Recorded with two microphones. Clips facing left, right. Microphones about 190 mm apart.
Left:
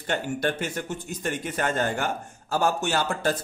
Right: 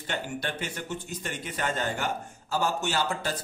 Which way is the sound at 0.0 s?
45° left (ahead or behind).